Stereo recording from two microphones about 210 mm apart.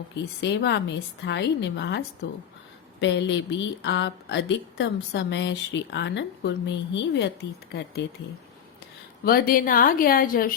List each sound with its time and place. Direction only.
0.2 s a woman's voice: 55° left (ahead or behind)
9.2 s speech: 45° left (ahead or behind)